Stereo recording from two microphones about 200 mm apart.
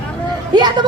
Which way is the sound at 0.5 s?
20° right (ahead or behind).